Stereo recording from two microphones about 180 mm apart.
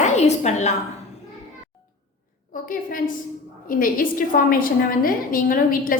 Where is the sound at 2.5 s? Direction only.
50° left (ahead or behind).